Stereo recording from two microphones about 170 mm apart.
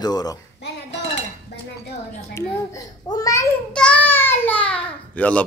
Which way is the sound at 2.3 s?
20° left (ahead or behind).